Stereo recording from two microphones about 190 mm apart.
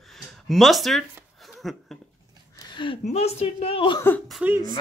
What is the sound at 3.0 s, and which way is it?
Speech, 35° left (ahead or behind).